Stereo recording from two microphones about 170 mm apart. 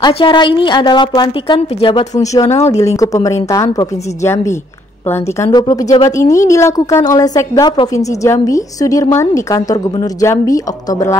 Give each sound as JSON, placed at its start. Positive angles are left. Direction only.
{"t": 0.0, "sound": "a woman's voice", "side_deg": 30}
{"t": 2.1, "sound": "a woman's voice", "side_deg": 20}